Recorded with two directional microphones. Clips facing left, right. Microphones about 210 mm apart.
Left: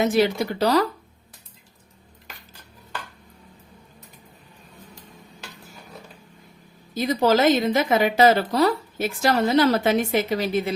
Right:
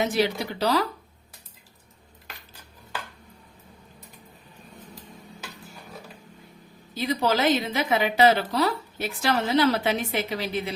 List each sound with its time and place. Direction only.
0.0 s a woman's voice: 45° left (ahead or behind)
6.9 s a woman's voice: 45° left (ahead or behind)